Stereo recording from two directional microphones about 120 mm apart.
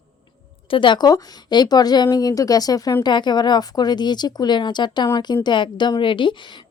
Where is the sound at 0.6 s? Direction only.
45° left (ahead or behind).